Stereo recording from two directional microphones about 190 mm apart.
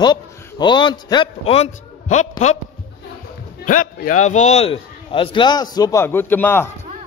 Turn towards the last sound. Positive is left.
turn(degrees=10)  # may be behind; listen again after turning